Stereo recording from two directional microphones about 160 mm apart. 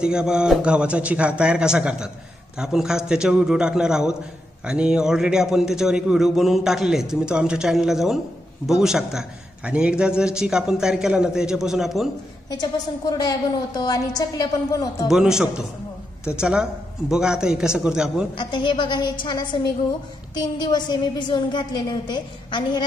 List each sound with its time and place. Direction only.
0.0 s a man's voice: 5° right (ahead or behind)
13.2 s a woman's voice: 25° left (ahead or behind)
15.0 s a man's voice: 5° right (ahead or behind)
18.3 s a woman's voice: 30° left (ahead or behind)